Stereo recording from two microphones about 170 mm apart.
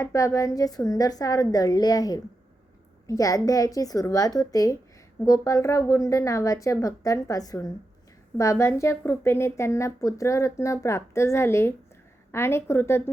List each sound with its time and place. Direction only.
0.0 s a woman's voice: 15° left (ahead or behind)